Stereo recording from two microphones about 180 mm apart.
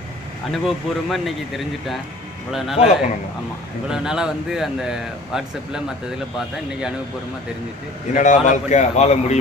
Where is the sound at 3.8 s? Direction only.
5° right (ahead or behind).